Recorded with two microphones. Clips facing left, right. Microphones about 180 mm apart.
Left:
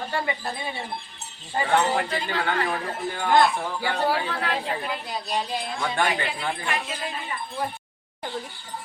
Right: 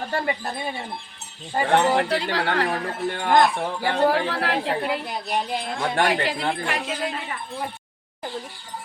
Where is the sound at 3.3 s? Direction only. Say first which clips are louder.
Right 1 dB; 40° right (ahead or behind).